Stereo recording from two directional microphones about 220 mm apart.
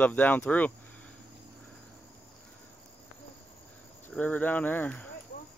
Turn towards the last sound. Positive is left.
turn(degrees=5)  # may be behind; listen again after turning